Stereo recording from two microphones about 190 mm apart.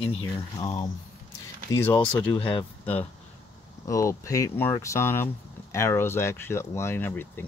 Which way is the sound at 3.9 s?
15° left (ahead or behind).